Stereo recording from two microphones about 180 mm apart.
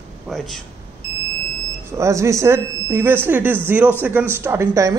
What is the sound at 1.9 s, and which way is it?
Speech, 15° right (ahead or behind).